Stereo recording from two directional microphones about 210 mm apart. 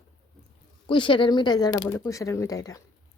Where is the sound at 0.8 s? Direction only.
25° left (ahead or behind).